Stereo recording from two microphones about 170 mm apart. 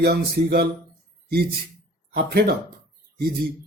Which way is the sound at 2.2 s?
65° right (ahead or behind).